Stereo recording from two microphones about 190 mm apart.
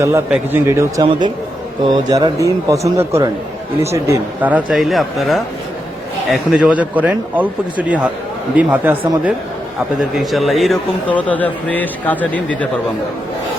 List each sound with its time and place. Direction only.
0.0 s speech: 15° right (ahead or behind); by 12.4 s 10° left (ahead or behind)